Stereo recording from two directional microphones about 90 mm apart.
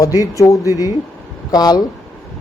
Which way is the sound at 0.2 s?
40° left (ahead or behind).